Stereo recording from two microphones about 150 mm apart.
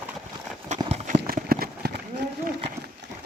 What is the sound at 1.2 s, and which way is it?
Clip-clop, 80° right.